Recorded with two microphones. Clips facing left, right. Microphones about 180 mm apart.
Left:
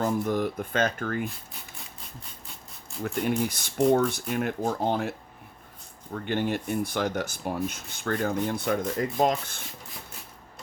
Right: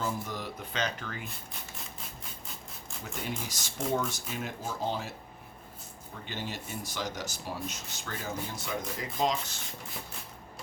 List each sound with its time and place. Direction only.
0.0 s speech: 55° left (ahead or behind)
3.0 s speech: 55° left (ahead or behind)
6.1 s speech: 55° left (ahead or behind)